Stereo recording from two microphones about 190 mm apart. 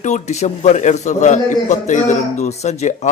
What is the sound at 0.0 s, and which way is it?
A man's voice, 35° left (ahead or behind).